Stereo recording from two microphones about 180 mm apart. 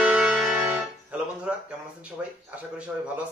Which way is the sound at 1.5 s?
5° right (ahead or behind).